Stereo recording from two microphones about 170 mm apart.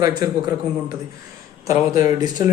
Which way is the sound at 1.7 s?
20° right (ahead or behind).